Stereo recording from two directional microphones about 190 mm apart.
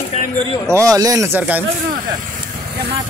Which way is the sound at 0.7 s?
15° right (ahead or behind).